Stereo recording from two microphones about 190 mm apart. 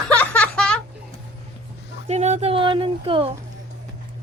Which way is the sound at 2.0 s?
35° right (ahead or behind).